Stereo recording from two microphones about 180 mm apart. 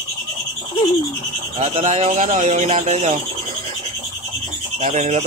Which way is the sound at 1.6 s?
35° right (ahead or behind).